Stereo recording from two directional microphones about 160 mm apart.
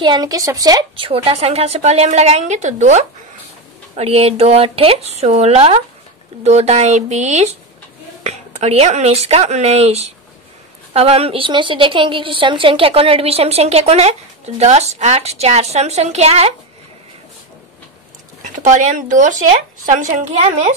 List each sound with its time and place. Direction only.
0.0 s a woman's voice: 25° right (ahead or behind); by 16.5 s 40° right (ahead or behind)
18.4 s speech: 50° right (ahead or behind)